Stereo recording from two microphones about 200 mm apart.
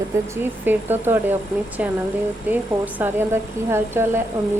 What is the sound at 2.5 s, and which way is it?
A woman's voice, 10° right (ahead or behind).